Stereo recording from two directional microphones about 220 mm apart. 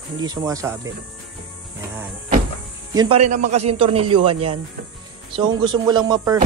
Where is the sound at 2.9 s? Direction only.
20° right (ahead or behind).